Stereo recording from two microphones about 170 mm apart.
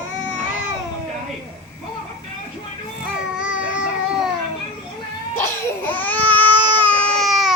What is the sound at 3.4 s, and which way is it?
Baby cry, 5° right (ahead or behind).